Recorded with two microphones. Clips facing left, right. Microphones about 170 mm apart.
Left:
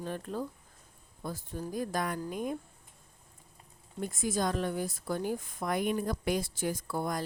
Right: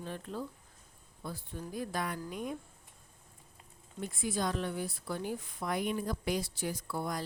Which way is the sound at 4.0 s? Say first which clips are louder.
Left 3 dB; 45° left (ahead or behind).